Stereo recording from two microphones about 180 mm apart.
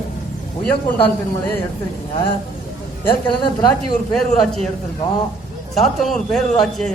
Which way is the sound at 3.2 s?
25° left (ahead or behind).